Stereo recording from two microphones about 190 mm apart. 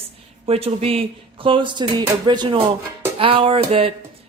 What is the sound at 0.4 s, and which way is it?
Speech, 30° right (ahead or behind).